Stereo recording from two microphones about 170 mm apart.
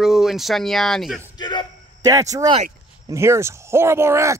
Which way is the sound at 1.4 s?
25° left (ahead or behind).